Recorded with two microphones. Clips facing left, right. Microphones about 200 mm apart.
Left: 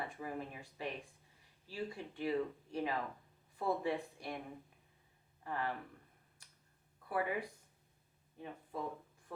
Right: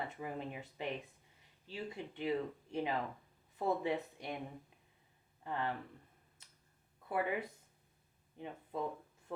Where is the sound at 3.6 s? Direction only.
20° right (ahead or behind).